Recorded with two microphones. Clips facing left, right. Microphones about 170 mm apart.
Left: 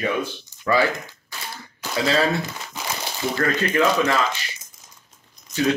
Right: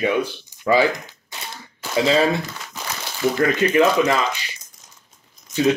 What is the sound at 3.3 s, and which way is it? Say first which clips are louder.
Speech: right 4 dB; 15° right (ahead or behind).